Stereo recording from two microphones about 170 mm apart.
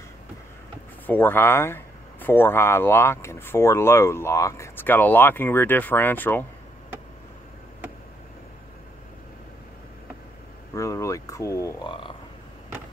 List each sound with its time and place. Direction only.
1.0 s speech: 10° left (ahead or behind)
10.7 s speech: 20° left (ahead or behind)
11.9 s a sound: 30° left (ahead or behind)